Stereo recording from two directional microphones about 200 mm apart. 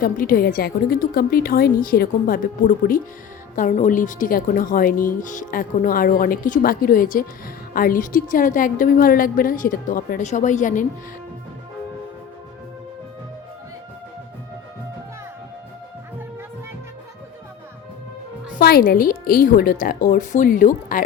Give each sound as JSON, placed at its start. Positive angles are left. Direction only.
{"t": 0.0, "sound": "a woman's voice", "side_deg": 45}
{"t": 18.6, "sound": "a woman's voice", "side_deg": 50}